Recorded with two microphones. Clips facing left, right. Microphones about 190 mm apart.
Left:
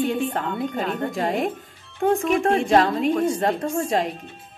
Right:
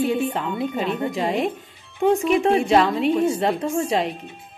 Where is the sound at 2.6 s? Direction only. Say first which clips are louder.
Right 1 dB; 40° left (ahead or behind).